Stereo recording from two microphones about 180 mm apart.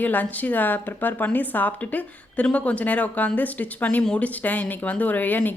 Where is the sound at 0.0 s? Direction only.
10° left (ahead or behind).